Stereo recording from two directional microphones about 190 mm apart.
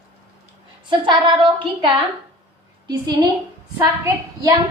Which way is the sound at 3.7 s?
15° right (ahead or behind).